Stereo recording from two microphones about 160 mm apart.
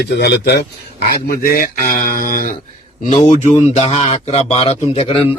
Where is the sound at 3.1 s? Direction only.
45° left (ahead or behind).